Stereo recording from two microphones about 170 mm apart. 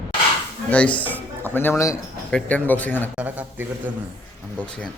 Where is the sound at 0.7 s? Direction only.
10° left (ahead or behind).